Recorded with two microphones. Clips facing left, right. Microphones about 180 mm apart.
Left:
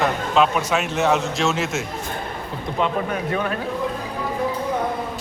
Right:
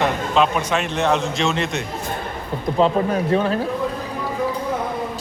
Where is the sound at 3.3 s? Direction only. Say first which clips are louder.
Right 6 dB; 30° right (ahead or behind).